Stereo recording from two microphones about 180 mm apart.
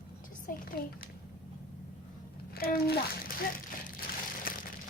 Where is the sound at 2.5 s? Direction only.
55° left (ahead or behind).